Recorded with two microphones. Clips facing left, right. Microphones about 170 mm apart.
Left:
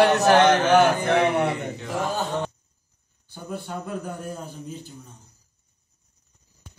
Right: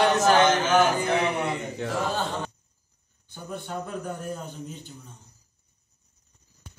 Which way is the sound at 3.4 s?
5° left (ahead or behind).